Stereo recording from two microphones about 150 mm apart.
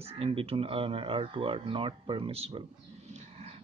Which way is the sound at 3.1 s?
45° right (ahead or behind).